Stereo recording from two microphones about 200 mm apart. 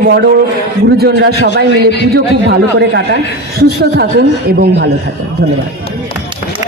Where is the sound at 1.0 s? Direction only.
55° right (ahead or behind).